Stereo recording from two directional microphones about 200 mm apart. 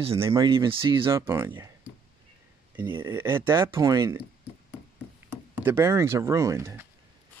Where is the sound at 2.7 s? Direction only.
10° right (ahead or behind).